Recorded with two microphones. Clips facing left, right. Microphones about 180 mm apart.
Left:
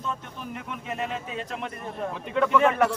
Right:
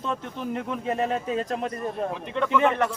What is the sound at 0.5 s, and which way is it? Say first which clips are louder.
A man's voice: right 6 dB; 35° right (ahead or behind).